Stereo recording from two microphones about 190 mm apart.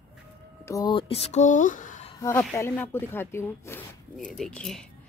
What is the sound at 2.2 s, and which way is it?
A woman's voice, 15° left (ahead or behind).